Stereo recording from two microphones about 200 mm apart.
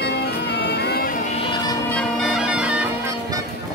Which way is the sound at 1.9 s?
Centre (ahead or behind).